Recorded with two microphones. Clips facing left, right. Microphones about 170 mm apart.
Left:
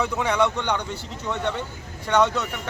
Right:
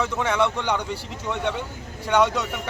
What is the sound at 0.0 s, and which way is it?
Speech, centre (ahead or behind).